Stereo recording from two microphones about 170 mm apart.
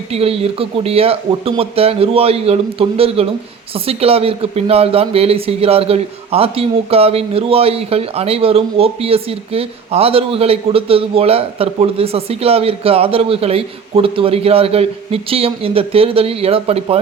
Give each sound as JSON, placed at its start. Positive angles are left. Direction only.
{"t": 0.1, "sound": "speech", "side_deg": -35}